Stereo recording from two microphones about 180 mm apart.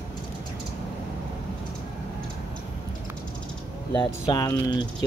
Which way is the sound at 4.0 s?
20° left (ahead or behind).